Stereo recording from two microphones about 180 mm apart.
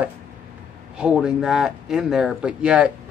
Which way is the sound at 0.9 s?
5° right (ahead or behind).